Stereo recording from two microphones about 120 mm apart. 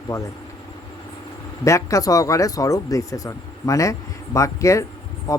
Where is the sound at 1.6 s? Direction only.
25° left (ahead or behind).